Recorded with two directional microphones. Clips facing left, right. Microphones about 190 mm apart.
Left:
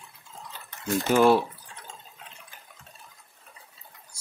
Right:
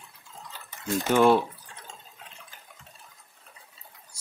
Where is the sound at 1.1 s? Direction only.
5° left (ahead or behind).